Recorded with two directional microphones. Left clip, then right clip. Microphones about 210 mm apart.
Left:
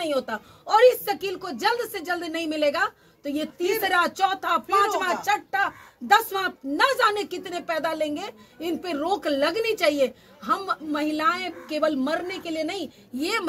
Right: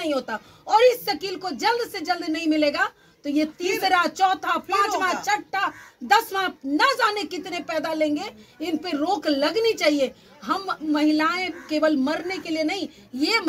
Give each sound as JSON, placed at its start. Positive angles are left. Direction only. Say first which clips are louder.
{"t": 0.1, "sound": "speech", "louder": "even", "side_deg": 20}